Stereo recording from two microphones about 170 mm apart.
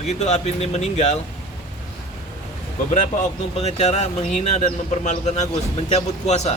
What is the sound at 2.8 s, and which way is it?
Speech, 45° left (ahead or behind).